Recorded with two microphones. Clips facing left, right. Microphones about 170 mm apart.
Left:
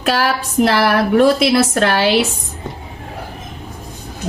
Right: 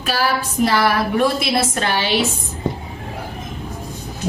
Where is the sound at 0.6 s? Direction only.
70° left (ahead or behind).